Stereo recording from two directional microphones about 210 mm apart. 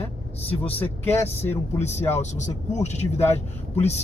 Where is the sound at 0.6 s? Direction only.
25° left (ahead or behind).